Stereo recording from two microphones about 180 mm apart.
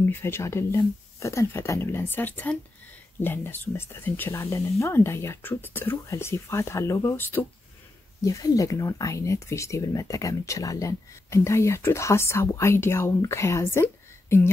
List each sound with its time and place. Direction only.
0.0 s speech: 15° left (ahead or behind)